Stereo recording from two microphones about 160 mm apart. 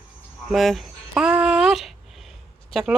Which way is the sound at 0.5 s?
Centre (ahead or behind).